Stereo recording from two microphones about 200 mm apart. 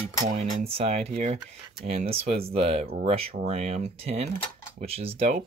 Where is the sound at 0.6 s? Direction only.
30° right (ahead or behind).